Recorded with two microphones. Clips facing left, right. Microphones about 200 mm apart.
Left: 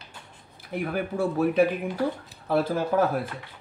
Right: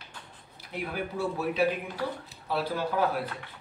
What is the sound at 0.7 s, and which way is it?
A man's voice, 50° left (ahead or behind).